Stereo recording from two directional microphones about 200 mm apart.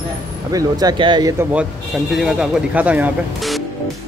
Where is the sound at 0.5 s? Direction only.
20° right (ahead or behind).